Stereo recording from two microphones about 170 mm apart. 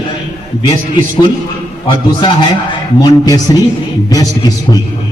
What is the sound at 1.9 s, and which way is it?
A man's voice, 25° left (ahead or behind).